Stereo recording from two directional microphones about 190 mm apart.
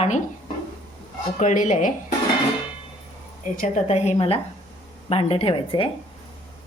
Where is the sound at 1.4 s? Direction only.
40° left (ahead or behind).